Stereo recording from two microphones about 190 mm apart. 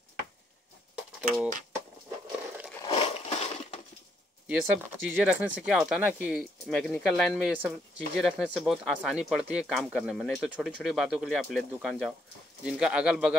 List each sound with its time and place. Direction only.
2.8 s crushing: 30° left (ahead or behind)
4.5 s speech: 10° right (ahead or behind)
6.7 s speech: 5° left (ahead or behind)